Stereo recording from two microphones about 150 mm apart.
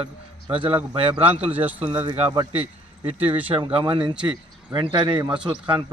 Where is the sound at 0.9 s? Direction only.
40° right (ahead or behind).